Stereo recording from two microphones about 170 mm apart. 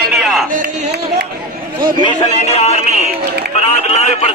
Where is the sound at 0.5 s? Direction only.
50° right (ahead or behind).